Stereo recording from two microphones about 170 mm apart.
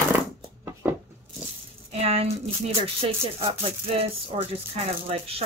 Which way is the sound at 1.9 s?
35° right (ahead or behind).